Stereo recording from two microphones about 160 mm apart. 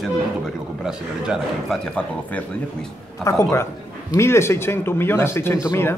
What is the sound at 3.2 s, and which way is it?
Speech, centre (ahead or behind).